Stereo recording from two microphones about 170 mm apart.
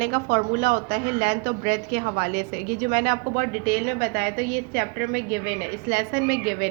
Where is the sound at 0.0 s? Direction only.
55° right (ahead or behind).